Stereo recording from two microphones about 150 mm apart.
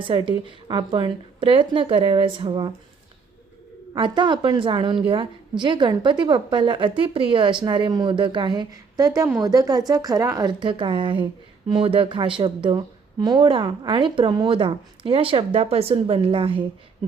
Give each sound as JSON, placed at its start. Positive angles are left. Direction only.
{"t": 0.0, "sound": "a woman's voice", "side_deg": -35}
{"t": 3.9, "sound": "a woman's voice", "side_deg": -30}